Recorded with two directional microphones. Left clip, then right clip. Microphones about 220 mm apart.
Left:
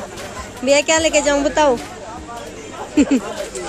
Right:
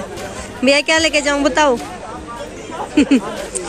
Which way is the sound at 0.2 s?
10° right (ahead or behind).